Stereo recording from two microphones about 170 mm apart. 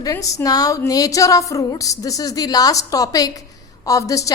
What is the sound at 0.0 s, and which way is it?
A woman's voice, 20° left (ahead or behind).